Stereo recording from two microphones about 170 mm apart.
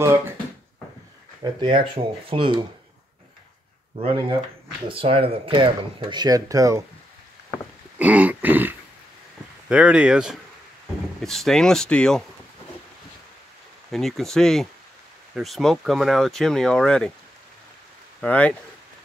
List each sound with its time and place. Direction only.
1.4 s speech: 25° right (ahead or behind)
4.1 s speech: 30° right (ahead or behind)
8.0 s a sound: 10° right (ahead or behind)
9.7 s speech: 5° right (ahead or behind)
13.9 s speech: centre (ahead or behind)
18.2 s speech: 10° left (ahead or behind)